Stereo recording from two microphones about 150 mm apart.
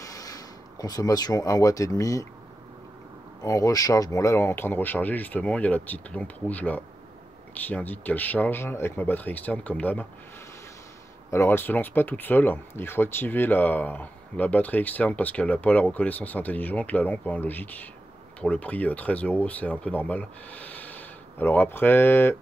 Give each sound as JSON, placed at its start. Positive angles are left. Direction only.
{"t": 0.0, "sound": "speech", "side_deg": 25}
{"t": 3.4, "sound": "speech", "side_deg": 25}
{"t": 11.2, "sound": "speech", "side_deg": 15}